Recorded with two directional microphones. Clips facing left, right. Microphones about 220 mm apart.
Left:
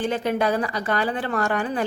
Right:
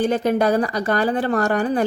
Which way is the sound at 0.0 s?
40° right (ahead or behind).